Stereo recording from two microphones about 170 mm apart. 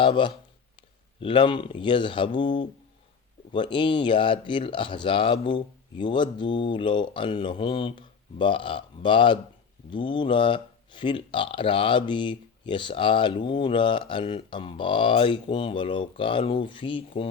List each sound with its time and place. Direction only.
0.0 s speech: 30° left (ahead or behind)